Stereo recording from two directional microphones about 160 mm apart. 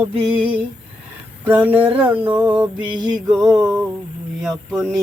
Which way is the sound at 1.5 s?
10° right (ahead or behind).